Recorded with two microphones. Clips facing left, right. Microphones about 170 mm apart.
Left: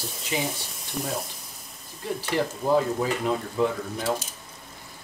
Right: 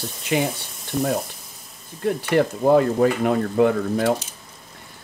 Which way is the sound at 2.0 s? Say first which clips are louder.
Right 7 dB; 60° right (ahead or behind).